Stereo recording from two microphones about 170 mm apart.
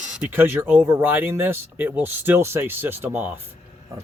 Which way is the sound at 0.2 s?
10° right (ahead or behind).